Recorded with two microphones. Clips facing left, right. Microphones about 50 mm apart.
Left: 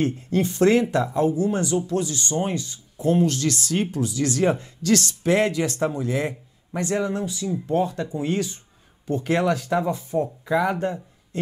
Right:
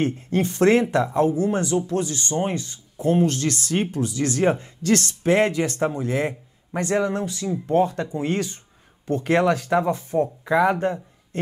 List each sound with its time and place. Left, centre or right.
0.0 s speech: right